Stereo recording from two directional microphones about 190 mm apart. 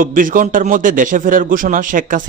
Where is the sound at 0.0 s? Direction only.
45° right (ahead or behind).